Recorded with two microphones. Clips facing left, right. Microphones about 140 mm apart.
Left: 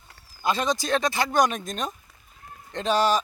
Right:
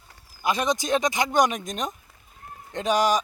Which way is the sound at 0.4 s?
15° right (ahead or behind).